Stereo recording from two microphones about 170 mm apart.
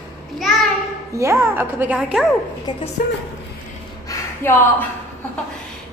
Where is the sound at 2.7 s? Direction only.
25° left (ahead or behind).